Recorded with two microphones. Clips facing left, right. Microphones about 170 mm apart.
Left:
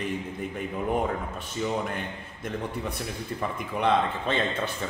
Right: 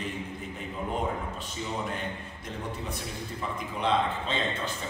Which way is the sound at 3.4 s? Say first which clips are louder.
Left 4 dB; 55° left (ahead or behind).